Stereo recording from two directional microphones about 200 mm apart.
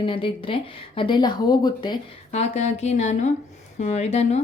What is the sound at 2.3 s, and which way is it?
Speech, 35° left (ahead or behind).